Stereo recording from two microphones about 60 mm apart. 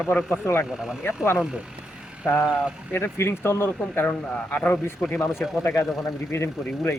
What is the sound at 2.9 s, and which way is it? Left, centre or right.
Speech, left.